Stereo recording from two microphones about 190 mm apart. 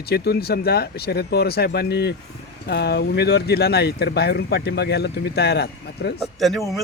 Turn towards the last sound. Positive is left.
turn(degrees=0)  # may be behind; listen again after turning